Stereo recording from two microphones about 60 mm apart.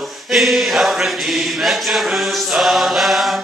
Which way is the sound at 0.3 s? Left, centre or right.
Centre.